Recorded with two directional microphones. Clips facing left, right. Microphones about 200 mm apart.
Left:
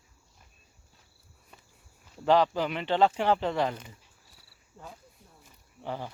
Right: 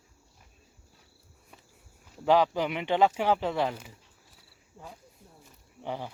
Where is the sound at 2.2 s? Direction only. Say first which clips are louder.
Even; 10° right (ahead or behind).